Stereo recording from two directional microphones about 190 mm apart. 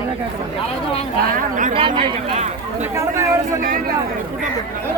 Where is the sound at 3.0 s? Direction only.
15° right (ahead or behind).